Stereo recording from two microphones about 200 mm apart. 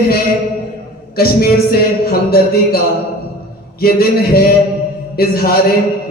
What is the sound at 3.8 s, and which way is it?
Speech, 50° left (ahead or behind).